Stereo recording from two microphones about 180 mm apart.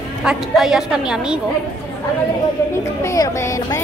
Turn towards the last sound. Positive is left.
turn(degrees=20)  # may be behind; listen again after turning